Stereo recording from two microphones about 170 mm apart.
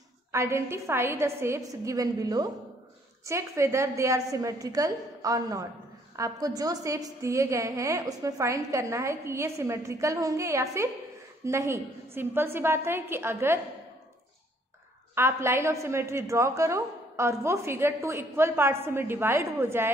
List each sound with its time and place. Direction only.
0.3 s a woman's voice: 15° right (ahead or behind)
15.1 s a woman's voice: 15° right (ahead or behind)